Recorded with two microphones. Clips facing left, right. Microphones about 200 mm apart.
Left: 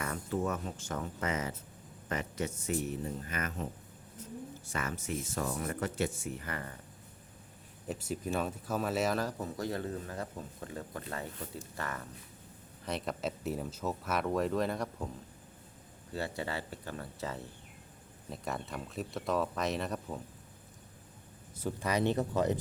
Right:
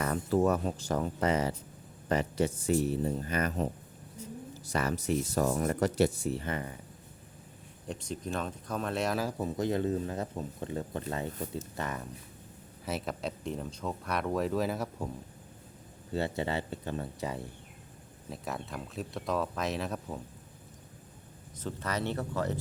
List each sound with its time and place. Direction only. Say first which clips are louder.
0.0 s a sound: right 6 dB; 35° right (ahead or behind)
0.4 s speech: right 7 dB; 35° right (ahead or behind); by 6.7 s 20° right (ahead or behind)
7.9 s speech: left 1 dB; 5° left (ahead or behind)
9.4 s speech: right 6 dB; 20° right (ahead or behind)
12.8 s speech: right 1 dB; 5° right (ahead or behind)
16.1 s speech: right 5 dB; 25° right (ahead or behind)
18.3 s speech: even; centre (ahead or behind)
21.6 s speech: left 3 dB; 15° left (ahead or behind)